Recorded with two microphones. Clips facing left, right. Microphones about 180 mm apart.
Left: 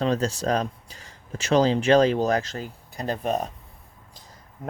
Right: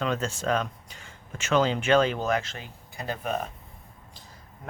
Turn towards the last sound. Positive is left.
turn(degrees=35)  # may be behind; listen again after turning